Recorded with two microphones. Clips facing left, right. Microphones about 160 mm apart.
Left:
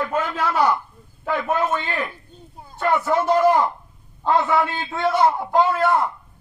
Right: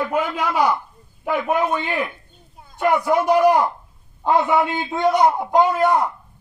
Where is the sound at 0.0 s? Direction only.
15° right (ahead or behind).